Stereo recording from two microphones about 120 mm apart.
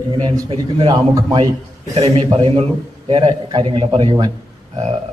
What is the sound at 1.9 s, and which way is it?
A man's voice, 55° right (ahead or behind).